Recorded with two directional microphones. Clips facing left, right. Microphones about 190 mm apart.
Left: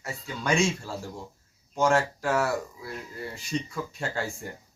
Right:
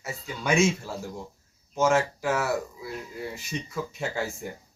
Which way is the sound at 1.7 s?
5° right (ahead or behind).